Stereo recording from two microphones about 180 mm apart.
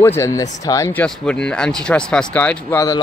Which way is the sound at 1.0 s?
5° left (ahead or behind).